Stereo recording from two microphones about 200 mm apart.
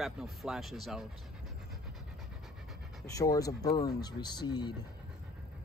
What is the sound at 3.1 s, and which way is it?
Speech, 15° left (ahead or behind).